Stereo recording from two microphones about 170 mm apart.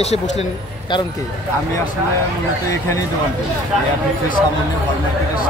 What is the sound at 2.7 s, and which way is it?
Speech, 20° left (ahead or behind).